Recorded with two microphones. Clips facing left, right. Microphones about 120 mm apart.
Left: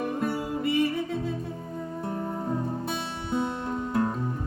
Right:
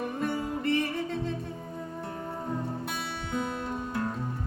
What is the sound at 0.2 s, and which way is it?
Music, 5° left (ahead or behind).